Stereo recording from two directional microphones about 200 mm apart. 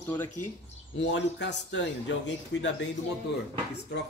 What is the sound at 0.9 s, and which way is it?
A man's voice, 65° left (ahead or behind).